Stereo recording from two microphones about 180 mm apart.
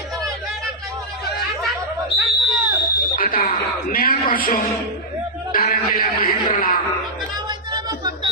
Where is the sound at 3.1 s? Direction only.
50° left (ahead or behind).